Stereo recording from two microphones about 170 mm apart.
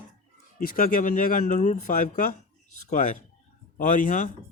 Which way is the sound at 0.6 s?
55° left (ahead or behind).